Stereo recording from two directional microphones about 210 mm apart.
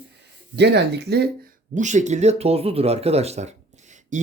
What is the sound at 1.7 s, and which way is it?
Speech, 35° right (ahead or behind).